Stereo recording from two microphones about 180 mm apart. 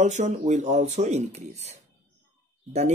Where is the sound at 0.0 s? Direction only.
40° right (ahead or behind).